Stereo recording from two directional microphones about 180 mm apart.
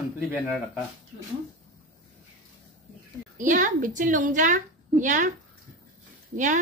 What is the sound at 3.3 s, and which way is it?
A woman's voice, 45° right (ahead or behind).